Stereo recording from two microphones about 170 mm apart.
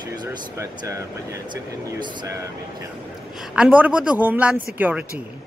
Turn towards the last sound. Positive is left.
turn(degrees=-10)  # may be behind; listen again after turning